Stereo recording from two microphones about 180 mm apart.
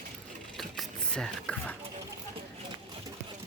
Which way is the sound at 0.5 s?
Centre (ahead or behind).